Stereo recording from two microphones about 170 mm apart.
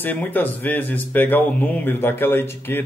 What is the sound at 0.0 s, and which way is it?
Speech, 10° left (ahead or behind).